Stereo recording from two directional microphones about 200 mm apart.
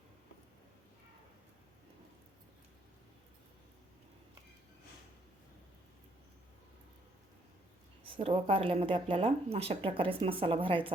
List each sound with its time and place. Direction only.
8.0 s speech: 25° right (ahead or behind)